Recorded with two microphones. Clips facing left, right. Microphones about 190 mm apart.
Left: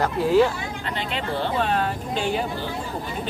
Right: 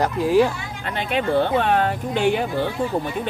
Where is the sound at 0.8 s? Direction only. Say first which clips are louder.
Right 7 dB; 55° right (ahead or behind).